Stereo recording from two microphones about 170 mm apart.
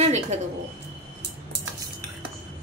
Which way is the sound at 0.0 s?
40° right (ahead or behind).